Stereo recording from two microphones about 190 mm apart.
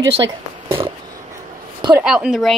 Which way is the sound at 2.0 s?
5° right (ahead or behind).